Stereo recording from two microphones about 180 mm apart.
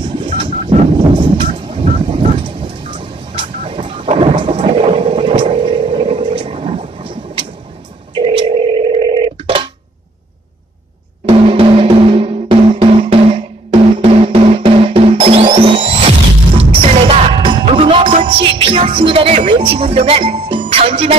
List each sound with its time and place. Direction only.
1.1 s vehicle: 30° right (ahead or behind)
8.2 s telephone: 30° right (ahead or behind)
11.2 s drum: 30° right (ahead or behind)
18.2 s music: 30° right (ahead or behind)